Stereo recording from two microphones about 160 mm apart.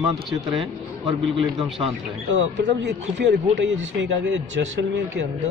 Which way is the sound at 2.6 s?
90° right.